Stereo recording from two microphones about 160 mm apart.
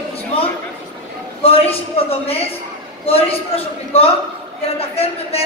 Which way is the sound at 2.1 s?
40° left (ahead or behind).